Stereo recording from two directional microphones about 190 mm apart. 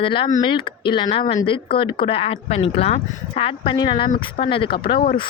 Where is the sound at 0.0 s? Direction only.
25° left (ahead or behind).